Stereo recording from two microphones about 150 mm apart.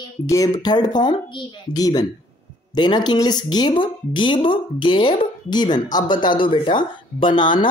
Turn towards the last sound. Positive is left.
turn(degrees=30)  # may be behind; listen again after turning